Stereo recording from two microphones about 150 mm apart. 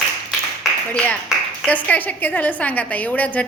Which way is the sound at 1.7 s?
10° left (ahead or behind).